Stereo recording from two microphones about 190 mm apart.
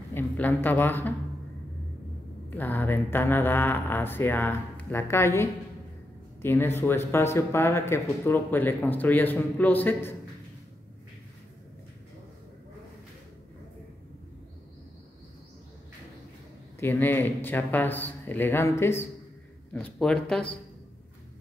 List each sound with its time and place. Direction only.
0.1 s speech: 10° left (ahead or behind)
2.5 s speech: 10° left (ahead or behind)
16.8 s speech: 10° left (ahead or behind)